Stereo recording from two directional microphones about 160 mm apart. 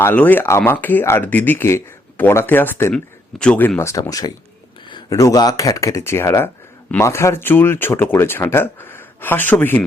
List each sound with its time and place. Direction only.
0.0 s speech: 10° left (ahead or behind)